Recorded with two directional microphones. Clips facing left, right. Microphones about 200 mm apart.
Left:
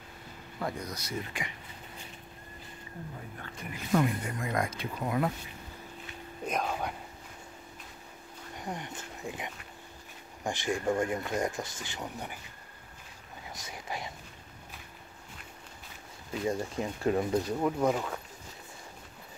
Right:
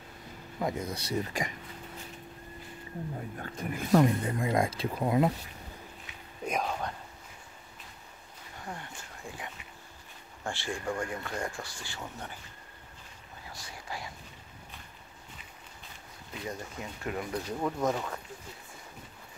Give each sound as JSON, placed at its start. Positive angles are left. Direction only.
{"t": 0.6, "sound": "speech", "side_deg": -20}
{"t": 3.3, "sound": "speech", "side_deg": -40}
{"t": 6.0, "sound": "a sound", "side_deg": -5}
{"t": 8.5, "sound": "speech", "side_deg": 20}
{"t": 13.5, "sound": "a sound", "side_deg": 20}
{"t": 16.4, "sound": "speech", "side_deg": 30}
{"t": 17.5, "sound": "speech", "side_deg": 10}